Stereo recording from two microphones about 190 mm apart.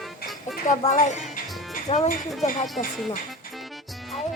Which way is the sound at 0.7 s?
40° left (ahead or behind).